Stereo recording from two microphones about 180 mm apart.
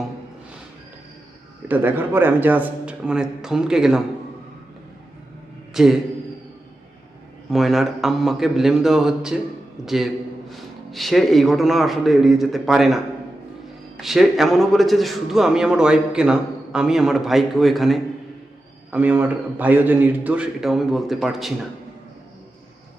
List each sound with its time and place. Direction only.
1.6 s a man's voice: 10° right (ahead or behind)
5.7 s speech: centre (ahead or behind)
7.5 s a man's voice: centre (ahead or behind)
14.0 s a man's voice: centre (ahead or behind)